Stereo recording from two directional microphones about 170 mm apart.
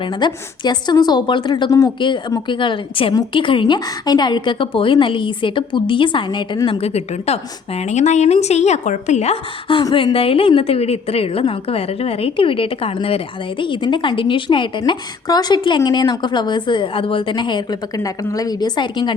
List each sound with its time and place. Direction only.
0.0 s a woman's voice: 25° left (ahead or behind)